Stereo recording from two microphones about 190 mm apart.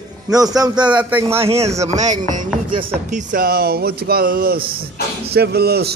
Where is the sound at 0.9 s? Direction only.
10° right (ahead or behind).